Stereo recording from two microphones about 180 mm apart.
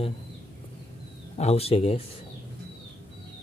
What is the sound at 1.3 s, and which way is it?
Speech, 35° left (ahead or behind).